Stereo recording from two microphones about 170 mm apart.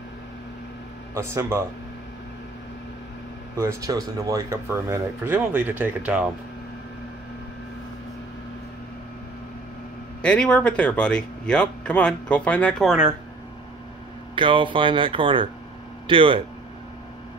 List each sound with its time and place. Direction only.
1.1 s speech: 15° right (ahead or behind)
3.5 s speech: 20° right (ahead or behind)
10.2 s speech: 5° left (ahead or behind)
14.3 s speech: 30° right (ahead or behind)